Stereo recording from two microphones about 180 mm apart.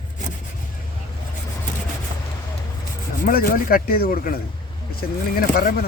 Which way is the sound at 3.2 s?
50° left (ahead or behind).